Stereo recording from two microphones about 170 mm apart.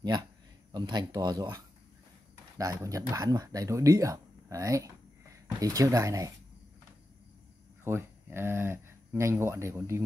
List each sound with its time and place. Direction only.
0.0 s speech: 25° right (ahead or behind)
7.8 s speech: 15° right (ahead or behind)